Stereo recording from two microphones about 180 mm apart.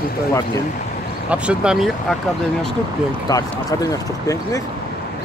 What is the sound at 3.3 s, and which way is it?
Speech, 20° left (ahead or behind).